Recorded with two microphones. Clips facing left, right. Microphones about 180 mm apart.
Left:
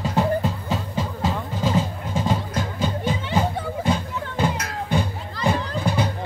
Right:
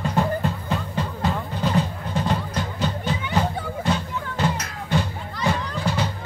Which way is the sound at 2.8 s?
10° left (ahead or behind).